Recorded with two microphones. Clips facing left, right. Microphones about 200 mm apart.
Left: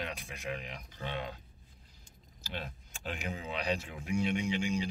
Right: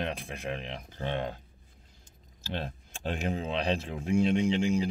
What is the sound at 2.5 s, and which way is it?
Speech, 45° right (ahead or behind).